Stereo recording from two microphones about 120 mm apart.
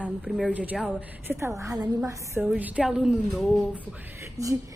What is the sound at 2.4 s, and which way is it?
Speech, 10° right (ahead or behind).